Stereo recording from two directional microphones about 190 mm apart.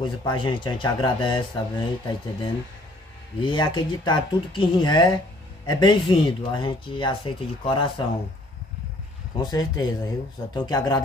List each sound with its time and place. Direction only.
0.0 s speech: 25° left (ahead or behind)
3.3 s speech: 25° left (ahead or behind)
9.4 s speech: 20° left (ahead or behind)